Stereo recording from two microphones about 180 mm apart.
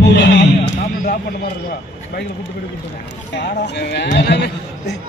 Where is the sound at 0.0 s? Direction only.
75° left (ahead or behind).